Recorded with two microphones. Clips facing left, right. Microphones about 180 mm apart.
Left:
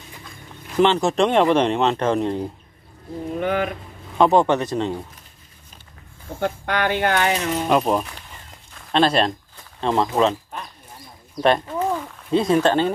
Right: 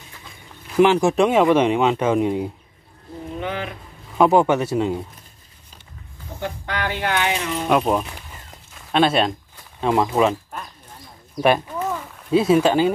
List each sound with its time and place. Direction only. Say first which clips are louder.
0.7 s speech: right 2 dB; 10° right (ahead or behind)
3.3 s speech: left 5 dB; 50° left (ahead or behind)
4.2 s speech: right 1 dB; 10° right (ahead or behind)
6.4 s speech: left 4 dB; 55° left (ahead or behind)
7.6 s a sound: right 1 dB; centre (ahead or behind)
9.8 s speech: right 1 dB; 10° right (ahead or behind)